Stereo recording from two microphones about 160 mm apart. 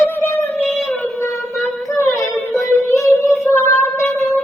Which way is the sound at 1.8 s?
20° left (ahead or behind).